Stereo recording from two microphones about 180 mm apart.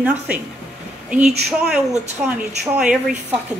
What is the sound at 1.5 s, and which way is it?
A woman's voice, 5° right (ahead or behind).